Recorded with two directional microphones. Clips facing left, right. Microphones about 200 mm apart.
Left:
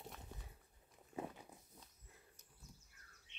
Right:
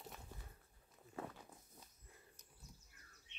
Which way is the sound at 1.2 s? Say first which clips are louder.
Left 2 dB; 15° left (ahead or behind).